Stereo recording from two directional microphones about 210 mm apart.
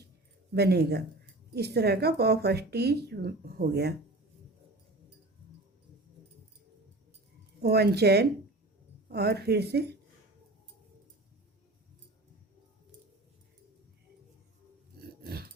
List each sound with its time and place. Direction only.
0.5 s speech: 50° right (ahead or behind)
7.6 s speech: 50° right (ahead or behind)
15.2 s a sound: 50° right (ahead or behind)